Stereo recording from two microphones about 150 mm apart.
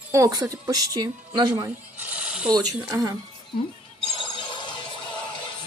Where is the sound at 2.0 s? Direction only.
10° right (ahead or behind).